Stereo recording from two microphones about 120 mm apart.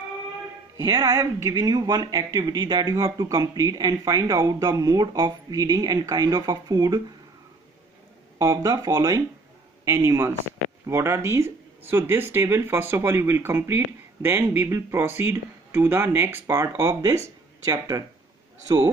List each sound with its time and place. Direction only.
0.7 s speech: 30° right (ahead or behind)
8.4 s speech: 30° right (ahead or behind)